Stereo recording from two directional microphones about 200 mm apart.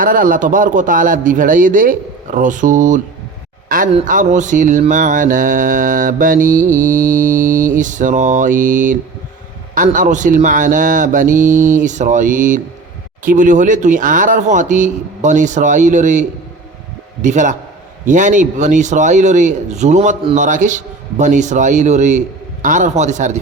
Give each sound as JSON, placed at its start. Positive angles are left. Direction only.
{"t": 0.0, "sound": "speech", "side_deg": -45}
{"t": 4.0, "sound": "speech", "side_deg": -40}
{"t": 17.2, "sound": "speech", "side_deg": -40}